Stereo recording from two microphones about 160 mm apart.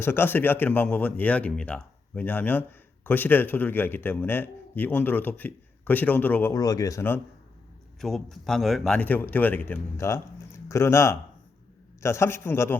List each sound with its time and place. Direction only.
0.0 s speech: 15° left (ahead or behind)
6.5 s speech: 20° left (ahead or behind)
8.0 s speech: centre (ahead or behind); by 12.7 s 15° left (ahead or behind)